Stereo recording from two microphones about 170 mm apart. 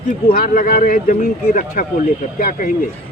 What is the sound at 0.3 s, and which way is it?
Speech, 60° left (ahead or behind).